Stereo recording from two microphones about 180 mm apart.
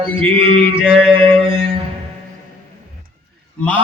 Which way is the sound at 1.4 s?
30° right (ahead or behind).